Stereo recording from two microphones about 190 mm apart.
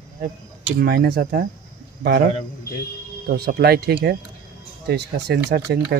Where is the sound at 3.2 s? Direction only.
55° right (ahead or behind).